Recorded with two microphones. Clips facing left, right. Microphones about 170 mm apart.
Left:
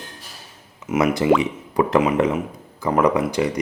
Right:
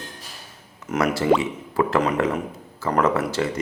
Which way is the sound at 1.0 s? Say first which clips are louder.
Left 2 dB; 15° left (ahead or behind).